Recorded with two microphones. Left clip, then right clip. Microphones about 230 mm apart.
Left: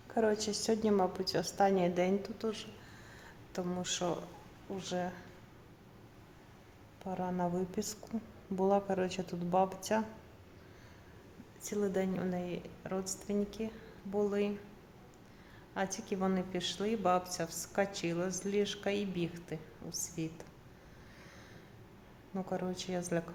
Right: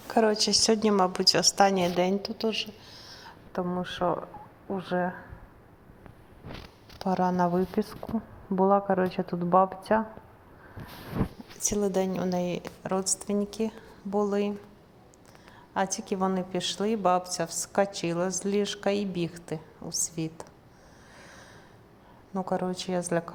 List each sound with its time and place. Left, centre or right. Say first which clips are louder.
0.1 s a woman's voice: right 9 dB; centre
7.0 s a woman's voice: right 11 dB; right; by 10.0 s centre
11.6 s a woman's voice: right 8 dB; right
15.7 s a woman's voice: right 8 dB; centre
22.4 s a woman's voice: right 8 dB; centre